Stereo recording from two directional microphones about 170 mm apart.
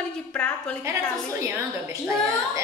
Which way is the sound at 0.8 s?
15° right (ahead or behind).